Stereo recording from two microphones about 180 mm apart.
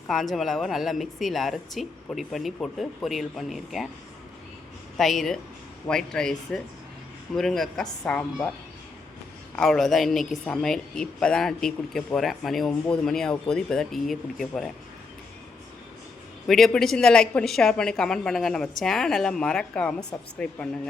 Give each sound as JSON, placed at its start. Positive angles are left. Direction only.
{"t": 0.1, "sound": "a woman's voice", "side_deg": 0}
{"t": 4.9, "sound": "a woman's voice", "side_deg": 0}
{"t": 9.6, "sound": "a woman's voice", "side_deg": 0}
{"t": 16.5, "sound": "a woman's voice", "side_deg": 0}